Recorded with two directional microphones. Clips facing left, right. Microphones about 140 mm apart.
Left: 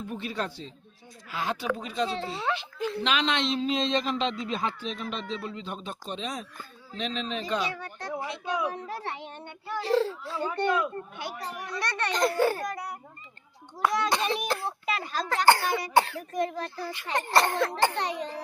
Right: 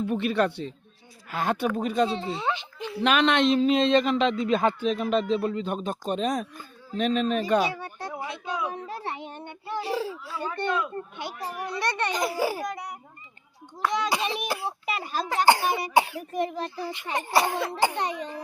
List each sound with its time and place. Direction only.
0.1 s speech: 65° right (ahead or behind)
1.3 s speech: 50° right (ahead or behind)
2.0 s speech: centre (ahead or behind)
3.0 s speech: 55° right (ahead or behind)
7.7 s a child's voice: 25° right (ahead or behind)
8.1 s a sound: 5° right (ahead or behind)
9.8 s speech: 5° right (ahead or behind)
10.4 s speech: 15° left (ahead or behind)
11.7 s a child's voice: 20° right (ahead or behind)
12.0 s a child's voice: 5° right (ahead or behind)